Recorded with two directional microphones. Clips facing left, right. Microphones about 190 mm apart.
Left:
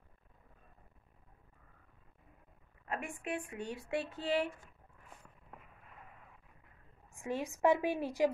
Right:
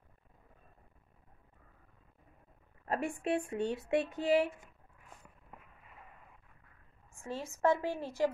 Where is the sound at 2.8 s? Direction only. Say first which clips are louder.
Right 6 dB; 35° right (ahead or behind); by 4.7 s 10° right (ahead or behind).